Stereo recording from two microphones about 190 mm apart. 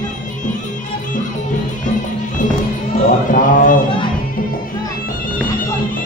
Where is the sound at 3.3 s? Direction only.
45° left (ahead or behind).